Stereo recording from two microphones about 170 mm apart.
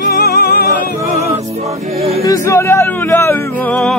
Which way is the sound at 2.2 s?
20° left (ahead or behind).